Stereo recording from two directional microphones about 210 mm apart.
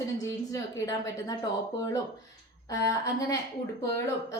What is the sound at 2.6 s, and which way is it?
Speech, 15° left (ahead or behind).